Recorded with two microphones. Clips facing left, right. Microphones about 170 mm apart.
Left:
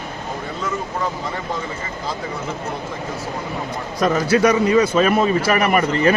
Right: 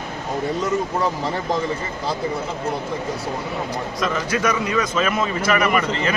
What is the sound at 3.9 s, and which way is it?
A man's voice, 45° left (ahead or behind).